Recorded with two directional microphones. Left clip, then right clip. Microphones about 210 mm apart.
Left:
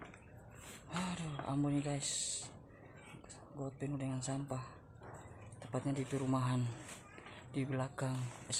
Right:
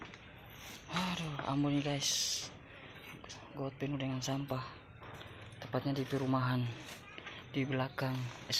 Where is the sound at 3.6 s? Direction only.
5° right (ahead or behind).